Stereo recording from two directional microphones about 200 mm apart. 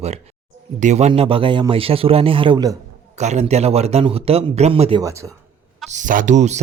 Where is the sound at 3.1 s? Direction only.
35° right (ahead or behind).